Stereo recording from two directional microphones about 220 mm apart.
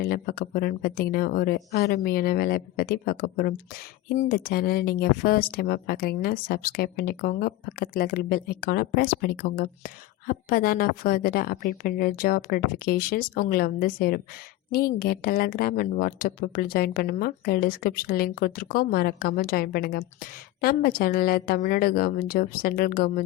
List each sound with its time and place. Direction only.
0.0 s speech: 45° left (ahead or behind)